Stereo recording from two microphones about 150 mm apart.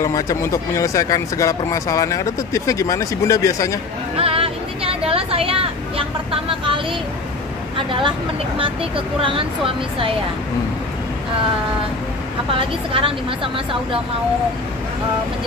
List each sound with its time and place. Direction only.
0.0 s speech: 20° left (ahead or behind)
4.2 s vehicle: 40° right (ahead or behind)
7.7 s a woman's voice: 35° right (ahead or behind)
12.5 s speech: 35° right (ahead or behind)